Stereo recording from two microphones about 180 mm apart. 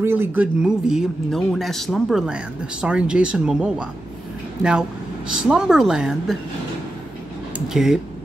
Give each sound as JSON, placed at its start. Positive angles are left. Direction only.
{"t": 0.0, "sound": "speech", "side_deg": -10}
{"t": 5.3, "sound": "speech", "side_deg": -5}
{"t": 7.5, "sound": "speech", "side_deg": -5}